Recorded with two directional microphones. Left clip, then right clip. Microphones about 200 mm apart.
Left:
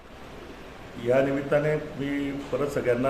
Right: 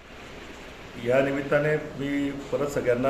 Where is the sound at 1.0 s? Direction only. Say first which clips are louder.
Even; 5° right (ahead or behind).